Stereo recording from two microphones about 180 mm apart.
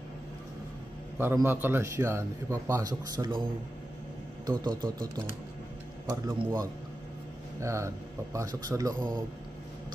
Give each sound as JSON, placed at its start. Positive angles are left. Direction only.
{"t": 1.1, "sound": "a man's voice", "side_deg": -10}
{"t": 4.5, "sound": "speech", "side_deg": -20}
{"t": 7.6, "sound": "a man's voice", "side_deg": -15}